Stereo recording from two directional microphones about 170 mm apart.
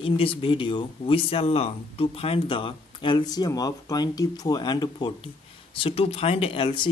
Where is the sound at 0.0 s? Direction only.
30° left (ahead or behind).